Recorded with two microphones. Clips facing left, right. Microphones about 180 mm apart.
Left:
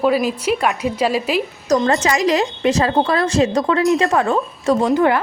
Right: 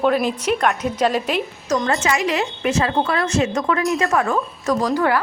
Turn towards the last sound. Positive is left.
turn(degrees=20)  # may be behind; listen again after turning